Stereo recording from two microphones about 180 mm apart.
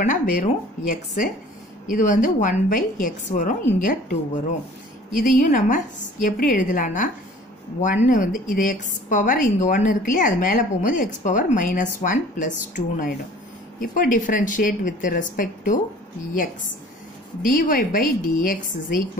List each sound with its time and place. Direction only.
0.0 s a woman's voice: 45° left (ahead or behind)
17.4 s a woman's voice: 50° left (ahead or behind)